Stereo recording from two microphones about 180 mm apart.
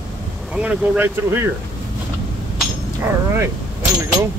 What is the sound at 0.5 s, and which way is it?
Speech, 10° right (ahead or behind).